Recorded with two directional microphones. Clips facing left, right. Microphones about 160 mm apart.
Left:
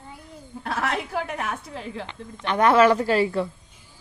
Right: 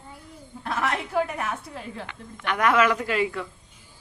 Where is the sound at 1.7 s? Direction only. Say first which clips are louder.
Left 3 dB; 20° left (ahead or behind).